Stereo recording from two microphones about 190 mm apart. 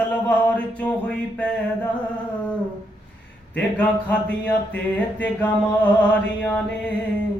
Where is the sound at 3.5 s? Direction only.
5° left (ahead or behind).